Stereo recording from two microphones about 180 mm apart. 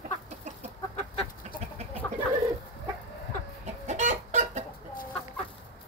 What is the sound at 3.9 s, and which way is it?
Chicken, 40° right (ahead or behind).